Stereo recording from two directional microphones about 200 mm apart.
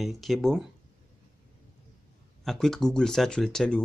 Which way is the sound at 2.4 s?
Centre (ahead or behind).